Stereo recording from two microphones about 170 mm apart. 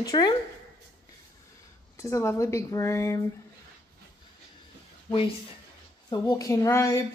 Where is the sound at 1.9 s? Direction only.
15° left (ahead or behind).